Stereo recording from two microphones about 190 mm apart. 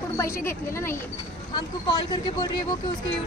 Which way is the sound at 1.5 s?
20° left (ahead or behind).